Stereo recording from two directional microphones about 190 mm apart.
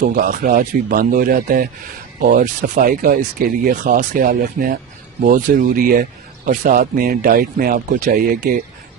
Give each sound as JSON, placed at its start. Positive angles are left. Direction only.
{"t": 0.0, "sound": "speech", "side_deg": -50}